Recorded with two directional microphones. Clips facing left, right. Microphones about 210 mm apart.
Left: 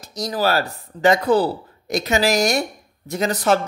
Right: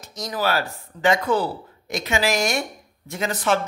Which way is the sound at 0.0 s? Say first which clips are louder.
Left 4 dB; 35° left (ahead or behind).